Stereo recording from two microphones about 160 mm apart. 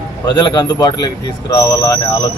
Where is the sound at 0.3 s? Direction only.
30° left (ahead or behind).